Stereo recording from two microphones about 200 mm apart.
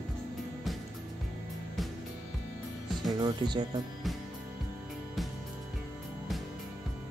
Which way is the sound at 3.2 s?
20° right (ahead or behind).